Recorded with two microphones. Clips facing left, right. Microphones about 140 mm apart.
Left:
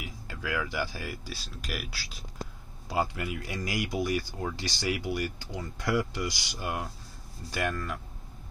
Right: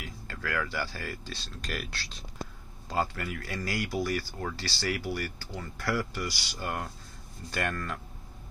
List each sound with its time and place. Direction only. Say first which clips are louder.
0.0 s speech: even; 15° left (ahead or behind)